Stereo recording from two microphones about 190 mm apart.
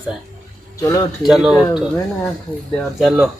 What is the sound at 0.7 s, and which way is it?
Speech, 15° left (ahead or behind).